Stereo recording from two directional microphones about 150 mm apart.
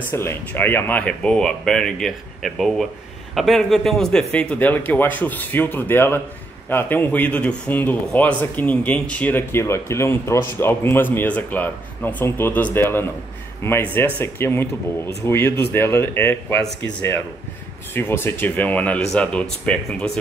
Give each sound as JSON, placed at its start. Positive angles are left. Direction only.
{"t": 0.1, "sound": "a man's voice", "side_deg": 15}